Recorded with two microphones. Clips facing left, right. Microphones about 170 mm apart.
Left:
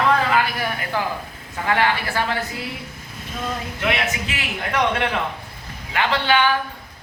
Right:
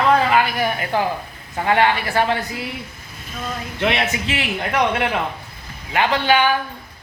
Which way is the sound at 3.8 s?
30° right (ahead or behind).